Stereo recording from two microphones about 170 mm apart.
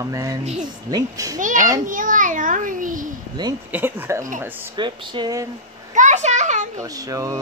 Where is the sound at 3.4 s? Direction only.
25° right (ahead or behind).